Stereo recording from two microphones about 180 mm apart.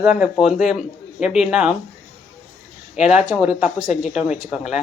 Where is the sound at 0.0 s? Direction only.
5° right (ahead or behind).